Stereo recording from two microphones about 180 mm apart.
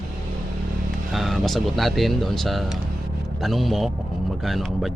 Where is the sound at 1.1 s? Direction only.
Centre (ahead or behind).